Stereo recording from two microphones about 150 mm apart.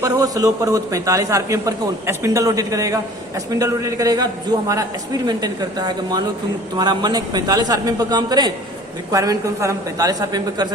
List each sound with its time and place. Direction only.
0.0 s a man's voice: 25° right (ahead or behind)